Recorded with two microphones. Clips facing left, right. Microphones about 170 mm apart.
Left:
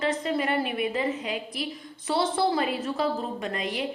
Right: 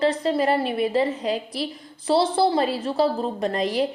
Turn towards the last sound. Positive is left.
turn(degrees=-35)  # may be behind; listen again after turning